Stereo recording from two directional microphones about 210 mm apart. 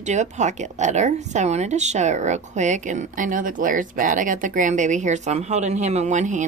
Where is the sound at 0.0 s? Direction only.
35° right (ahead or behind).